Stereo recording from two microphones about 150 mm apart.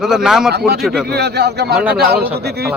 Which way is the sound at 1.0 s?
90° right.